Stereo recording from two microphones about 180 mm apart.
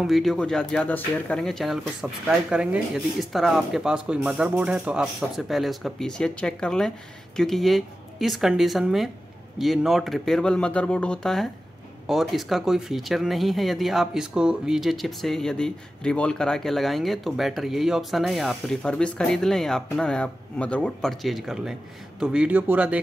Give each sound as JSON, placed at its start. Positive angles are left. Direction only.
{"t": 0.0, "sound": "speech", "side_deg": 0}